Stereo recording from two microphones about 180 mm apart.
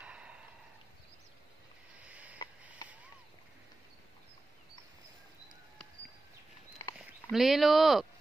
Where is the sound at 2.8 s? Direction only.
20° left (ahead or behind).